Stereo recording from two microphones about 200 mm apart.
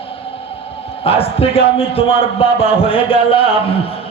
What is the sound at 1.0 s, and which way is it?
A man's voice, 30° left (ahead or behind).